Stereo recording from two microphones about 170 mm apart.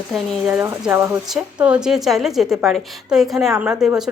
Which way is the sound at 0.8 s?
15° right (ahead or behind).